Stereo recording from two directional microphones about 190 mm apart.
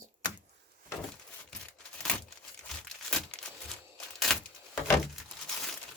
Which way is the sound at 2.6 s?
5° left (ahead or behind).